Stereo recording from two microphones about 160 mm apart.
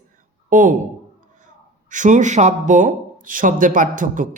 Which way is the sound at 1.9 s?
50° right (ahead or behind).